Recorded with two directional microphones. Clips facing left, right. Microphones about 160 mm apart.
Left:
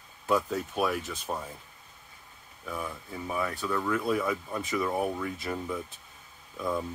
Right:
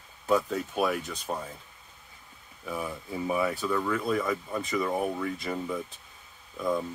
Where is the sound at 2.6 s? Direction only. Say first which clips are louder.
Right 2 dB; 10° right (ahead or behind).